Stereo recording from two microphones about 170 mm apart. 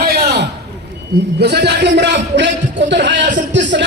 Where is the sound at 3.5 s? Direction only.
90° right.